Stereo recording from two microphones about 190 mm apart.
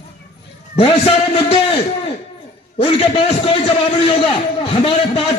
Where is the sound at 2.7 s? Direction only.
30° left (ahead or behind).